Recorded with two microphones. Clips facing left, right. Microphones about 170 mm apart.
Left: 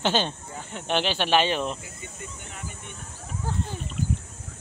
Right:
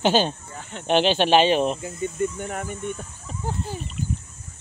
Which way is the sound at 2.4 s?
55° right (ahead or behind).